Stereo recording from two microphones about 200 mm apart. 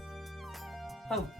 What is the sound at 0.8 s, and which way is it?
Music, centre (ahead or behind).